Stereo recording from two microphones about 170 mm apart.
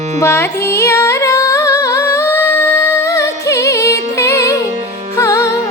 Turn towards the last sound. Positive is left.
turn(degrees=15)  # may be behind; listen again after turning